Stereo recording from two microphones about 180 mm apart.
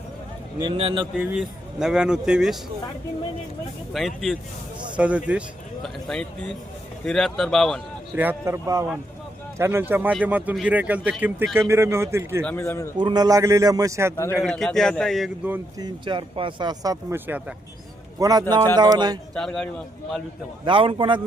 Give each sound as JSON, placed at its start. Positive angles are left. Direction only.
{"t": 0.6, "sound": "speech", "side_deg": -30}
{"t": 1.2, "sound": "speech", "side_deg": -5}
{"t": 3.9, "sound": "speech", "side_deg": 0}
{"t": 5.8, "sound": "speech", "side_deg": 5}
{"t": 8.1, "sound": "speech", "side_deg": -10}
{"t": 12.4, "sound": "speech", "side_deg": 10}
{"t": 13.0, "sound": "speech", "side_deg": -25}
{"t": 14.2, "sound": "speech", "side_deg": 15}
{"t": 14.4, "sound": "speech", "side_deg": 0}
{"t": 15.8, "sound": "speech", "side_deg": -25}
{"t": 19.3, "sound": "speech", "side_deg": 5}
{"t": 20.7, "sound": "speech", "side_deg": -30}